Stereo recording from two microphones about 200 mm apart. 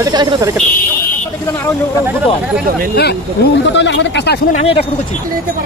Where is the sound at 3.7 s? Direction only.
65° left (ahead or behind).